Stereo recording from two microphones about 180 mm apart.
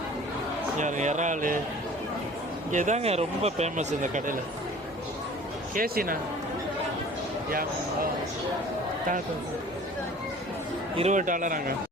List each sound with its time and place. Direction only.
0.8 s a man's voice: 40° right (ahead or behind)
2.7 s speech: 40° right (ahead or behind)
5.7 s a man's voice: 55° right (ahead or behind)
10.9 s a man's voice: 40° right (ahead or behind)